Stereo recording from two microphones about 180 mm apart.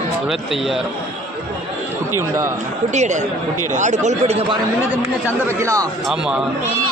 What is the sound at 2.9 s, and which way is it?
Speech, 40° right (ahead or behind).